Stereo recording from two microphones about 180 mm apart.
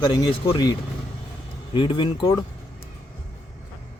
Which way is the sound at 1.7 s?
25° left (ahead or behind).